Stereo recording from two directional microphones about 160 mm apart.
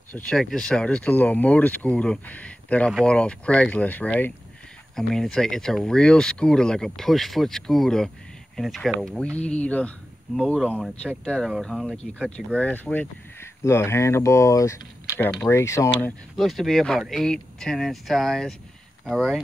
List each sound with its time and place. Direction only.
0.1 s speech: 5° left (ahead or behind)
10.3 s speech: 5° right (ahead or behind)